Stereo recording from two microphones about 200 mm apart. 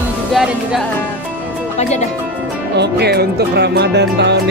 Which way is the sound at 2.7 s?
55° right (ahead or behind).